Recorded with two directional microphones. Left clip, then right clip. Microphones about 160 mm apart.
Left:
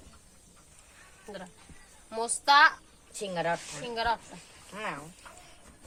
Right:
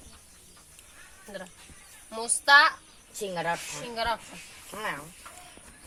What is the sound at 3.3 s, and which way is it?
Speech, 25° right (ahead or behind).